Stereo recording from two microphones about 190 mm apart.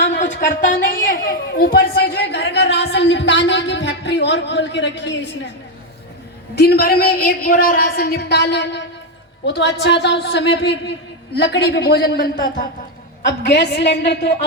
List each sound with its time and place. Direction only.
0.3 s a woman's voice: 45° left (ahead or behind); by 5.1 s 65° left (ahead or behind)
6.6 s a woman's voice: 55° left (ahead or behind)